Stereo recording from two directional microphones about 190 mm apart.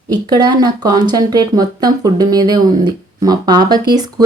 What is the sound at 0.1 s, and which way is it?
Speech, 20° right (ahead or behind).